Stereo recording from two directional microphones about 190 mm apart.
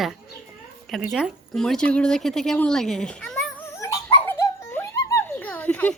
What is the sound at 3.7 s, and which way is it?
Dog, 15° left (ahead or behind).